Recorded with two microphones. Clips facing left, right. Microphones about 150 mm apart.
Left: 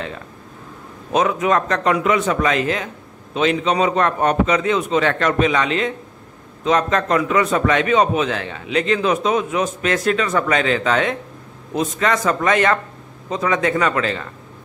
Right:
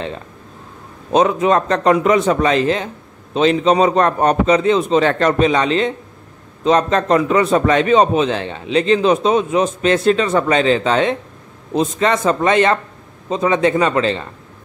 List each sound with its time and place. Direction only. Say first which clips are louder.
1.1 s a man's voice: right 4 dB; 30° right (ahead or behind)